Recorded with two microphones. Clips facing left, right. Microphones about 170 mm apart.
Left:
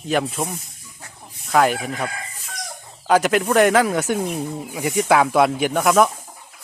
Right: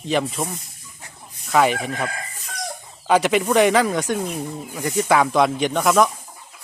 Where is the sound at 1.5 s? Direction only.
Centre (ahead or behind).